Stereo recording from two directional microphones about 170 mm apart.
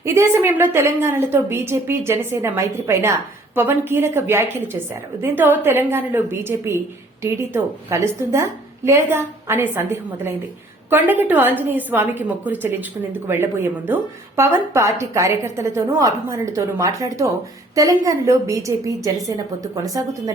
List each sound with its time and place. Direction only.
0.0 s a woman's voice: 15° right (ahead or behind)